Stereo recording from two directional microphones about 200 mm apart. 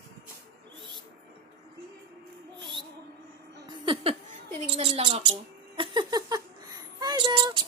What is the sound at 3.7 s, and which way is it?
Laughter, 25° right (ahead or behind).